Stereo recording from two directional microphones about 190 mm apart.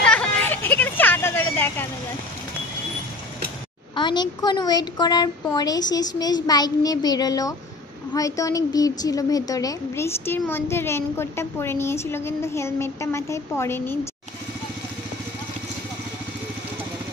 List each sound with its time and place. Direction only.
0.0 s vehicle: 5° left (ahead or behind)
3.9 s a woman's voice: 25° left (ahead or behind)